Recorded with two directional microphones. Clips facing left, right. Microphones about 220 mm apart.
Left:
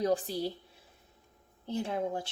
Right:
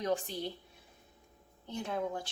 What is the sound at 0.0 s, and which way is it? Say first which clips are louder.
Speech: left 4 dB; 35° left (ahead or behind).